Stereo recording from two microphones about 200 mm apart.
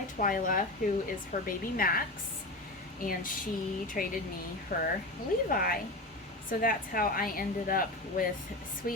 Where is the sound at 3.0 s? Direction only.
45° left (ahead or behind).